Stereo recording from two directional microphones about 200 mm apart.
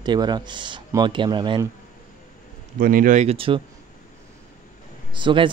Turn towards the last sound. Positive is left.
turn(degrees=-25)  # may be behind; listen again after turning